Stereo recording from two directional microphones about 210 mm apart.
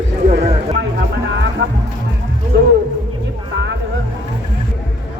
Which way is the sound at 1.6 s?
60° right (ahead or behind).